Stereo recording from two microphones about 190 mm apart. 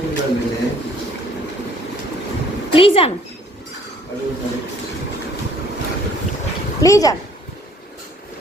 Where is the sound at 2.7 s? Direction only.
30° left (ahead or behind).